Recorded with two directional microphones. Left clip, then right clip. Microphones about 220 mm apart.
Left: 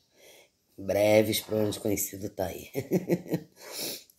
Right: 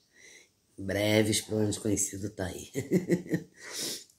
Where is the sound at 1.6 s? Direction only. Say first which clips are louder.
Left 2 dB; centre (ahead or behind).